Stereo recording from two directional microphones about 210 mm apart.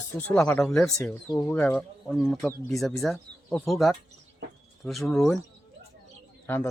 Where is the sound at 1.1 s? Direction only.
15° left (ahead or behind); by 5.4 s centre (ahead or behind).